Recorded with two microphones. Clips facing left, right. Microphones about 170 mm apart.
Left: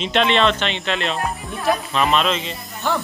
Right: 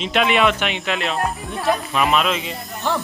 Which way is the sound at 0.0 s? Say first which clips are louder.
Even; 5° right (ahead or behind).